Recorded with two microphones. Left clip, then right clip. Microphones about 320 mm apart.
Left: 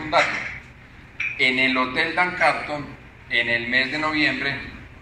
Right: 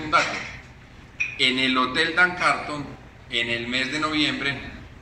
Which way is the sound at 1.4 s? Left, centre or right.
Left.